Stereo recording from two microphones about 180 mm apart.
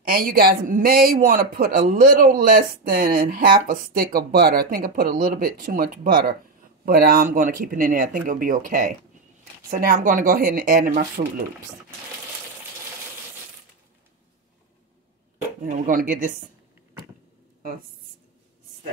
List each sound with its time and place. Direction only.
0.1 s a man's voice: 55° right (ahead or behind)
15.6 s a man's voice: 50° right (ahead or behind)